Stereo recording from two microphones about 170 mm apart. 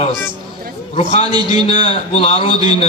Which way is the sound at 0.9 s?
40° left (ahead or behind).